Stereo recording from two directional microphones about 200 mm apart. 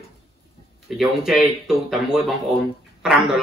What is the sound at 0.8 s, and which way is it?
Speech, centre (ahead or behind).